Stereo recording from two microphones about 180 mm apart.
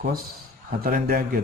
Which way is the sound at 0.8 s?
55° right (ahead or behind).